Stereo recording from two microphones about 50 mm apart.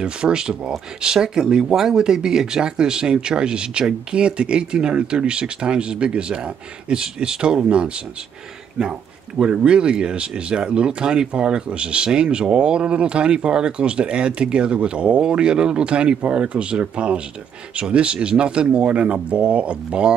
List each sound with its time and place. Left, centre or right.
0.0 s speech: centre